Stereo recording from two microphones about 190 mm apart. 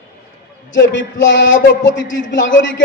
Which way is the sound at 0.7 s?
70° left (ahead or behind).